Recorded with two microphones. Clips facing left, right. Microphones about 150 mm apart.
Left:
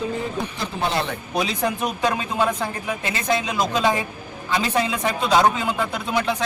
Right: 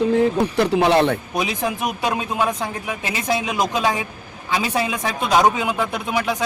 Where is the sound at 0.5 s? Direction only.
75° right (ahead or behind).